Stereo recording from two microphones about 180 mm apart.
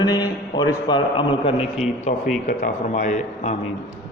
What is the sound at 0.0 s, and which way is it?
A man's voice, 20° left (ahead or behind).